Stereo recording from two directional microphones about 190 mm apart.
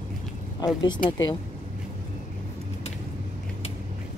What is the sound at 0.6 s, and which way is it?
Speech, 25° left (ahead or behind).